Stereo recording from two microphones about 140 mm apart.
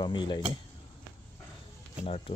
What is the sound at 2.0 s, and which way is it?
Speech, 50° left (ahead or behind).